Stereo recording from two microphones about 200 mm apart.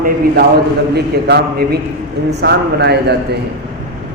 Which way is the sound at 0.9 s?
55° right (ahead or behind).